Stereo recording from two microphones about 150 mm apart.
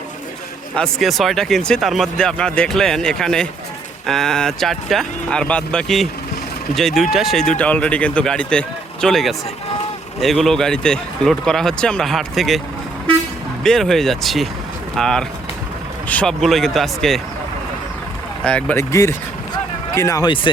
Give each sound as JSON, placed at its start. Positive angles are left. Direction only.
{"t": 0.8, "sound": "speech", "side_deg": 0}
{"t": 13.7, "sound": "speech", "side_deg": 5}
{"t": 18.4, "sound": "speech", "side_deg": 10}
{"t": 18.9, "sound": "speech", "side_deg": 20}